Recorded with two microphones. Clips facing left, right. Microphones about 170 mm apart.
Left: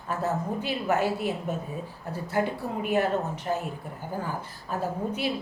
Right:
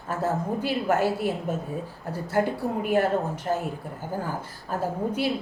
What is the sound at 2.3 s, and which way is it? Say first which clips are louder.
A woman's voice: right 3 dB; 50° right (ahead or behind).